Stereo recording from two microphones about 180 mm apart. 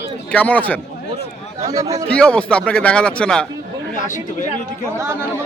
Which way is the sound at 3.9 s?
45° left (ahead or behind).